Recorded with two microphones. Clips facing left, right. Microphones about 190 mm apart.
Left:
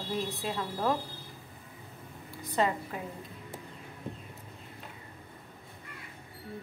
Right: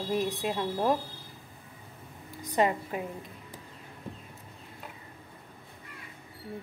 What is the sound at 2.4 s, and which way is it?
Speech, 15° right (ahead or behind).